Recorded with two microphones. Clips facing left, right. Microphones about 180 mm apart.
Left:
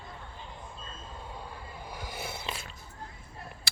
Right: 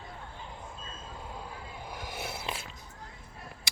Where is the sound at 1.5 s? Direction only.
Centre (ahead or behind).